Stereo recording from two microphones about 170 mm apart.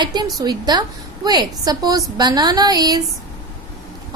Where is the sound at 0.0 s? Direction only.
25° right (ahead or behind).